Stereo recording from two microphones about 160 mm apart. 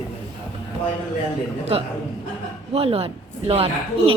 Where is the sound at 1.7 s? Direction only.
35° right (ahead or behind).